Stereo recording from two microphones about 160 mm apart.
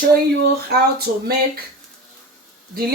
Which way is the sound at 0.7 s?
75° right (ahead or behind).